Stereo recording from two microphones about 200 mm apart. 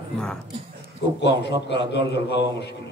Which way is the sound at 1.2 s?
60° left (ahead or behind).